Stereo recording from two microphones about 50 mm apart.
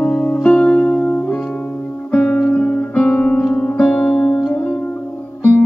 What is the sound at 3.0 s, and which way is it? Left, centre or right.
Music, centre.